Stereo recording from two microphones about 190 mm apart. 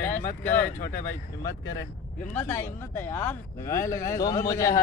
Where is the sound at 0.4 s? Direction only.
10° left (ahead or behind).